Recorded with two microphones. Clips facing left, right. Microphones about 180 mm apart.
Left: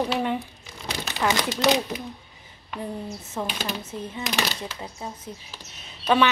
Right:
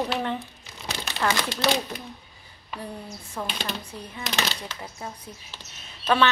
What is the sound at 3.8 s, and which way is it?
Speech, 20° left (ahead or behind).